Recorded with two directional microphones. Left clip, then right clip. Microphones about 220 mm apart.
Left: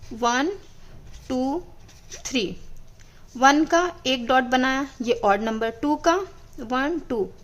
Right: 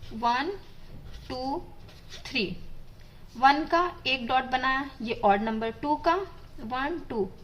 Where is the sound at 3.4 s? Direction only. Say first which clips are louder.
Left 4 dB; 40° left (ahead or behind).